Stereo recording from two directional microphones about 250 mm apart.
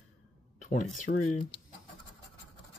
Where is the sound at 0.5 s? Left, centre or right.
Left.